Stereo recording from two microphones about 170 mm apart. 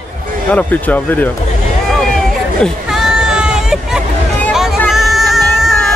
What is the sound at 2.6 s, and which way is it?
Hubbub, centre (ahead or behind).